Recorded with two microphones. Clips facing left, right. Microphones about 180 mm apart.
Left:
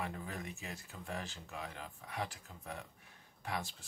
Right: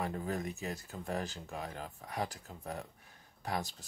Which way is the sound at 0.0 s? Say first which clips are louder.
Right 6 dB; 40° right (ahead or behind).